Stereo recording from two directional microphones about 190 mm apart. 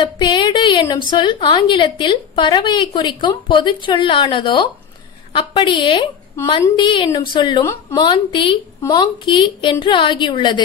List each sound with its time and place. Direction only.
0.0 s a woman's voice: 25° left (ahead or behind)